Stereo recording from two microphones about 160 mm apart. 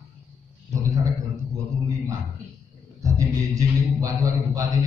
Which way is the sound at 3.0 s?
20° right (ahead or behind).